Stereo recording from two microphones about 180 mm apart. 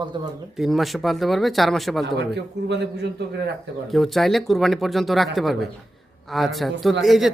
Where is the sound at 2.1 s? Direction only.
70° right (ahead or behind).